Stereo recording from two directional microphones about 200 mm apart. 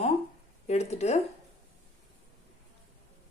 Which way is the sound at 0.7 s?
35° left (ahead or behind).